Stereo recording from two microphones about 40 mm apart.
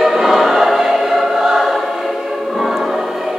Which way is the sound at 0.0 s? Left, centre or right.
Centre.